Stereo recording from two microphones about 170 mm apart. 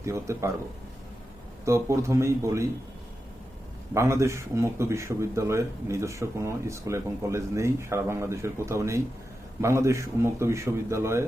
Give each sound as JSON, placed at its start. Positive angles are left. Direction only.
{"t": 0.0, "sound": "speech", "side_deg": -15}
{"t": 1.6, "sound": "speech", "side_deg": -15}
{"t": 3.9, "sound": "speech", "side_deg": -15}